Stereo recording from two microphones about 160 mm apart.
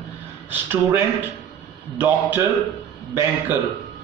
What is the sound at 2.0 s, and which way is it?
A man's voice, 15° right (ahead or behind).